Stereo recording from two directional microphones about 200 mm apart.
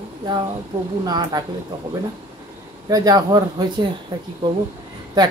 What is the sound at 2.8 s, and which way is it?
Speech, 20° right (ahead or behind).